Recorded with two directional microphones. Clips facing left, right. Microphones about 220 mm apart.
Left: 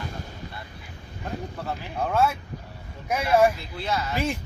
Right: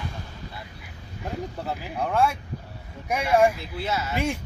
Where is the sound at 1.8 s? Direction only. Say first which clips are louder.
Even; 5° right (ahead or behind).